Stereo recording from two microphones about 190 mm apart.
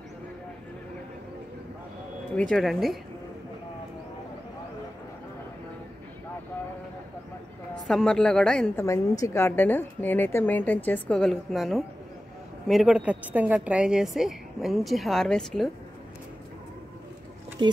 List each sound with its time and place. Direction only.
2.5 s a woman's voice: centre (ahead or behind)
7.9 s a woman's voice: 5° left (ahead or behind)
8.8 s a woman's voice: 15° left (ahead or behind)
17.6 s speech: 25° right (ahead or behind)